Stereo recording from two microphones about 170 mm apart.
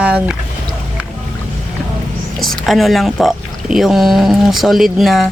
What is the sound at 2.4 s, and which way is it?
Speech, centre (ahead or behind).